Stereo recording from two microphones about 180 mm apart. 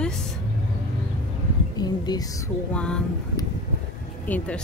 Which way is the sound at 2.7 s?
5° left (ahead or behind).